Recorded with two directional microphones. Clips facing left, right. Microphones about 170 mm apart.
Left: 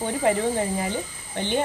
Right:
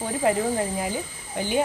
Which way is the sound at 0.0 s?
Centre (ahead or behind).